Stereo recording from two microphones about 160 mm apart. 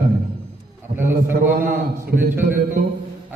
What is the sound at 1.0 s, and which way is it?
Speech, 55° right (ahead or behind).